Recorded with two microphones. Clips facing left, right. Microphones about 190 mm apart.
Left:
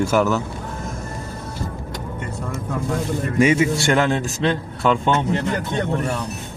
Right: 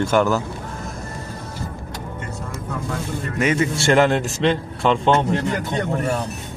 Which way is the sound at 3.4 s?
10° left (ahead or behind).